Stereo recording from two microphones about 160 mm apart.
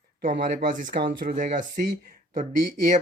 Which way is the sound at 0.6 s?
55° right (ahead or behind).